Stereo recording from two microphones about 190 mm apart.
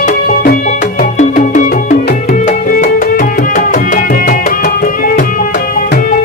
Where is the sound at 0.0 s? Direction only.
45° left (ahead or behind).